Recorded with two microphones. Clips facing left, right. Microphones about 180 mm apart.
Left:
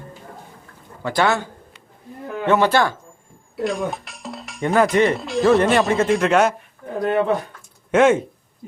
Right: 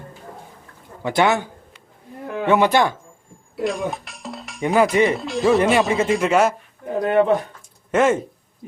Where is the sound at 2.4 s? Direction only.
15° right (ahead or behind).